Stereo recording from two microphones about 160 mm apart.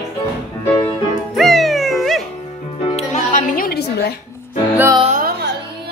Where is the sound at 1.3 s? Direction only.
Centre (ahead or behind).